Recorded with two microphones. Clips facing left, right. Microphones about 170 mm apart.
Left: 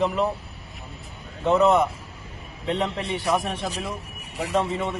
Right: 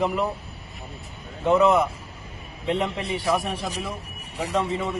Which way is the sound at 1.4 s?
Centre (ahead or behind).